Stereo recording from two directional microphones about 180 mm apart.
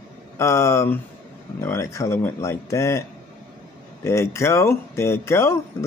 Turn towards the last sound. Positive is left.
turn(degrees=15)  # may be behind; listen again after turning